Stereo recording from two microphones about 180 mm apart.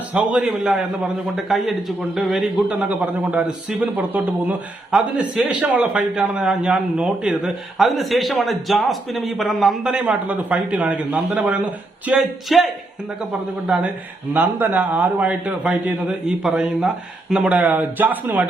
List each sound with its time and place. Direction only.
0.1 s a man's voice: 5° right (ahead or behind)